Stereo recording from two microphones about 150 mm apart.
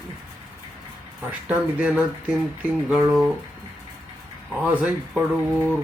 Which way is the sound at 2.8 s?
Centre (ahead or behind).